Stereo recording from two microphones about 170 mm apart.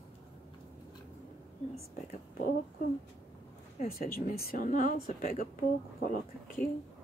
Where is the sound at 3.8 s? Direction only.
55° left (ahead or behind).